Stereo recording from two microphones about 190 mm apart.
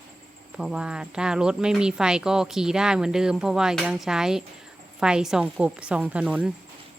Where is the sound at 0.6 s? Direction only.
5° right (ahead or behind).